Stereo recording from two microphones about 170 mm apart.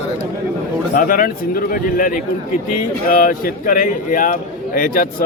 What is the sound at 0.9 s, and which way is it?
Speech, 55° left (ahead or behind).